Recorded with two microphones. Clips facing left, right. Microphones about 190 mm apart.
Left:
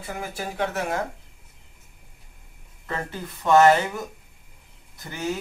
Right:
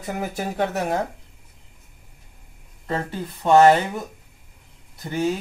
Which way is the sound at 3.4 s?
30° right (ahead or behind).